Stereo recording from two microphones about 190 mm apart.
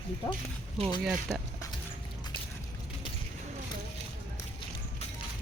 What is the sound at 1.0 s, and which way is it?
Speech, 5° right (ahead or behind).